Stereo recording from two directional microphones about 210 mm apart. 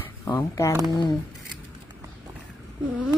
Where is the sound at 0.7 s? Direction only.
15° right (ahead or behind).